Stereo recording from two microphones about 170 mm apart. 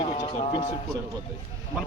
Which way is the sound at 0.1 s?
30° left (ahead or behind).